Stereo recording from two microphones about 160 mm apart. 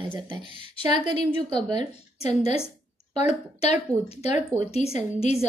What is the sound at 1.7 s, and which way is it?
A woman's voice, 40° left (ahead or behind).